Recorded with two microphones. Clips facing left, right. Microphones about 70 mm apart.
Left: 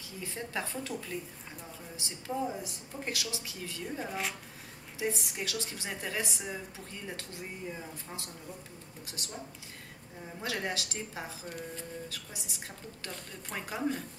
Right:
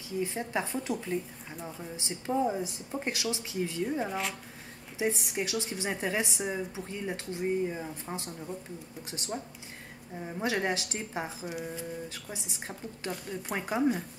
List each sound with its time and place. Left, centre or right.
0.2 s speech: right
4.1 s speech: centre
4.9 s speech: right
11.4 s speech: centre
12.1 s speech: right
13.1 s speech: centre